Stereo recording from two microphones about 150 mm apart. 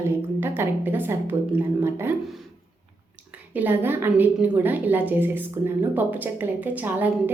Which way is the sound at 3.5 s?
15° right (ahead or behind).